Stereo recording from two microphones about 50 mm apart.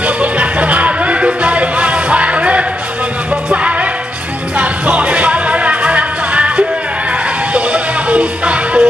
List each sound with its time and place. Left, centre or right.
0.0 s music: right